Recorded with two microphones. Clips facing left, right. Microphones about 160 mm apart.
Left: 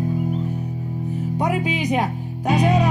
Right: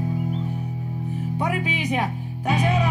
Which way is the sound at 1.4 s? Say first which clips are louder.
Left 4 dB; 40° left (ahead or behind).